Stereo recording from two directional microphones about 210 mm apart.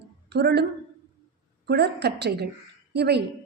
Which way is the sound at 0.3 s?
50° right (ahead or behind).